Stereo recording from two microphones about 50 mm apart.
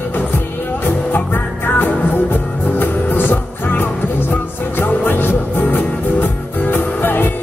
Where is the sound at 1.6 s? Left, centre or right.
Left.